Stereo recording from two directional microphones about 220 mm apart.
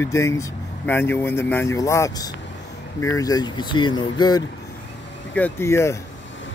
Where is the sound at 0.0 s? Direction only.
15° left (ahead or behind).